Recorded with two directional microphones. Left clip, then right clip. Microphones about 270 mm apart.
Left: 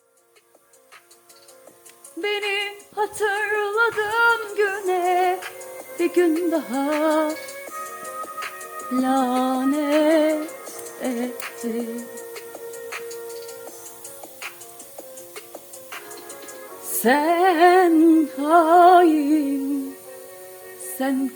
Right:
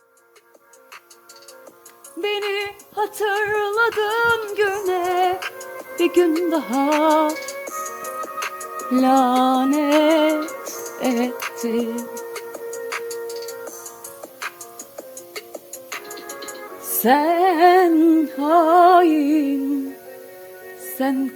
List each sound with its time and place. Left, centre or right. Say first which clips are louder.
2.2 s music: right 1 dB; centre
5.4 s music: right 4 dB; right
6.0 s music: right 2 dB; centre
7.6 s music: right 4 dB; right
9.0 s music: right 5 dB; right
15.9 s music: right 5 dB; right
17.0 s music: right 2 dB; centre
21.0 s music: right 2 dB; centre